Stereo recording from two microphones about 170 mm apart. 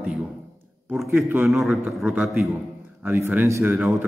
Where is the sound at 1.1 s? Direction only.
15° right (ahead or behind).